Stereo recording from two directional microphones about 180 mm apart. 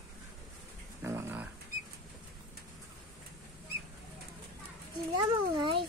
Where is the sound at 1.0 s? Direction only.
15° right (ahead or behind).